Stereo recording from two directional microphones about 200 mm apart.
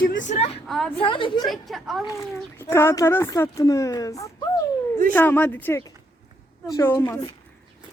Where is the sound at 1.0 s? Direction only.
25° left (ahead or behind).